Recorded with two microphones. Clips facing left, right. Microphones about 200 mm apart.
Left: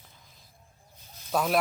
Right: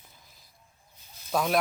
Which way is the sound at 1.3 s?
Centre (ahead or behind).